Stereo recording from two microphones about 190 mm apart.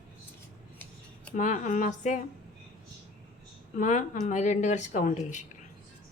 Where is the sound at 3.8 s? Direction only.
40° left (ahead or behind).